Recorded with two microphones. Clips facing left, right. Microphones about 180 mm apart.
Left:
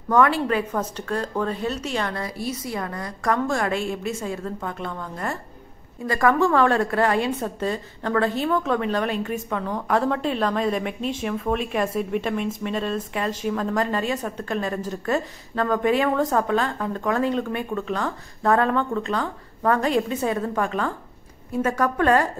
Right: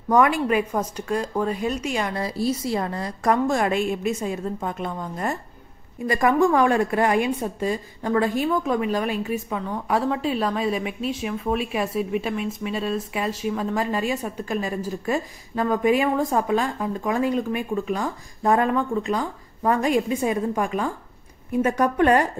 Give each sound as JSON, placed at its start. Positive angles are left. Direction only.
{"t": 0.1, "sound": "a woman's voice", "side_deg": -15}
{"t": 2.2, "sound": "a woman's voice", "side_deg": -30}